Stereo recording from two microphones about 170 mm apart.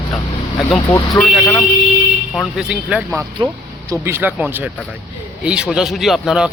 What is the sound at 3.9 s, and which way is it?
Speech, 15° right (ahead or behind).